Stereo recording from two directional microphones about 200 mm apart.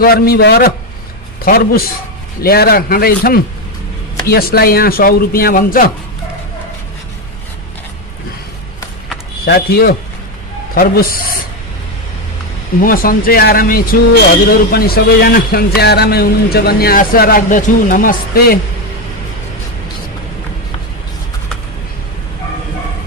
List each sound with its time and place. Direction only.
0.0 s a man's voice: 50° left (ahead or behind)
9.4 s a man's voice: 50° left (ahead or behind)
12.8 s a man's voice: 45° left (ahead or behind)